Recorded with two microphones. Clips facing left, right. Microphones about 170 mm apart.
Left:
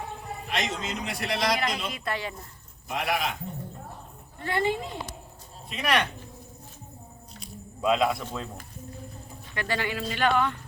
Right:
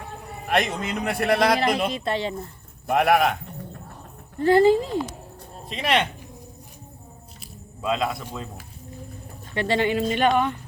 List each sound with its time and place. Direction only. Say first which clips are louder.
0.4 s a man's voice: right 8 dB; 55° right (ahead or behind)
1.5 s a woman's voice: right 8 dB; 30° right (ahead or behind)
2.8 s a man's voice: right 10 dB; 60° right (ahead or behind)
4.4 s a woman's voice: right 11 dB; 35° right (ahead or behind)
7.3 s squish: left 5 dB; centre (ahead or behind)
8.3 s speech: even; 5° right (ahead or behind)
9.6 s speech: right 8 dB; 25° right (ahead or behind)